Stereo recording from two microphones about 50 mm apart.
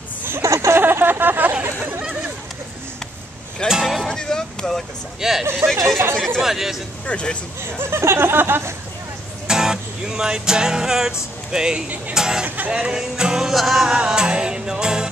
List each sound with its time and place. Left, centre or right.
0.4 s a sound: right
0.7 s a sound: right
3.6 s music: centre
4.1 s vehicle: centre
5.2 s music: centre
5.9 s speech: right
6.4 s music: centre
7.1 s speech: left
7.8 s speech: right
9.5 s music: centre
12.4 s music: right
12.7 s music: centre